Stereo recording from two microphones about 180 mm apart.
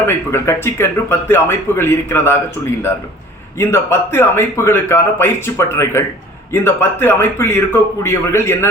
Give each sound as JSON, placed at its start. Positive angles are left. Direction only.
{"t": 0.0, "sound": "a man's voice", "side_deg": 15}
{"t": 3.6, "sound": "a man's voice", "side_deg": 15}